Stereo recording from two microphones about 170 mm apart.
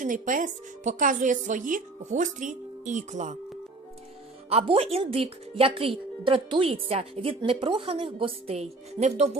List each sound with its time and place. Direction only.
0.0 s a woman's voice: 50° right (ahead or behind)
4.4 s a woman's voice: 35° right (ahead or behind)